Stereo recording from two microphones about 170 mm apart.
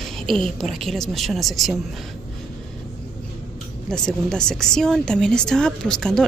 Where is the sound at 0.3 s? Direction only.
Centre (ahead or behind).